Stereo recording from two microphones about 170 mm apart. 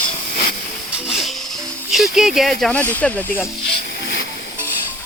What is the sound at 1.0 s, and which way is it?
Music, centre (ahead or behind).